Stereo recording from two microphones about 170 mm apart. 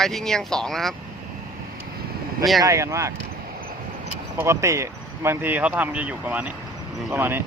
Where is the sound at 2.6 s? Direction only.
15° right (ahead or behind).